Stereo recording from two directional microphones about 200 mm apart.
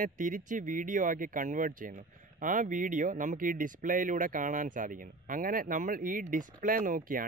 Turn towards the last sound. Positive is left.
turn(degrees=-45)  # may be behind; listen again after turning